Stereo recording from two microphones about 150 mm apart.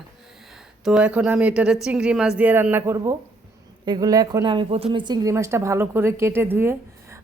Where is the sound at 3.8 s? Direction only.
25° right (ahead or behind).